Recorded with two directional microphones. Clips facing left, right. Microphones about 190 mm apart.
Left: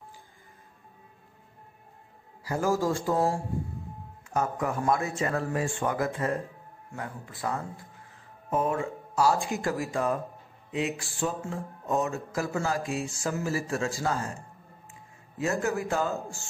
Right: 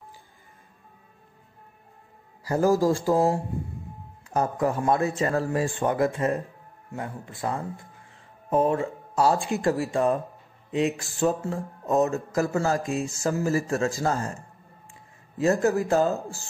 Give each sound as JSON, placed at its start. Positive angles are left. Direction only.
{"t": 2.4, "sound": "speech", "side_deg": -40}
{"t": 15.3, "sound": "speech", "side_deg": -40}